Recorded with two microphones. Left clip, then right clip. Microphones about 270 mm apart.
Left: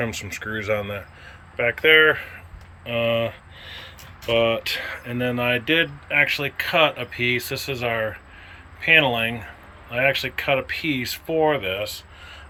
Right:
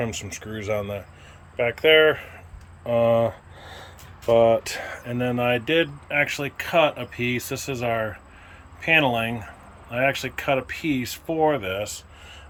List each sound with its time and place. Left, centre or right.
0.0 s speech: centre
4.3 s speech: centre